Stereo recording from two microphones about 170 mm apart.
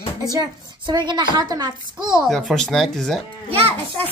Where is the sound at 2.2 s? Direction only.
Centre (ahead or behind).